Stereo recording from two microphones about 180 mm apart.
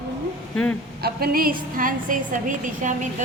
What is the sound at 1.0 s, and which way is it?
A woman's voice, 55° right (ahead or behind).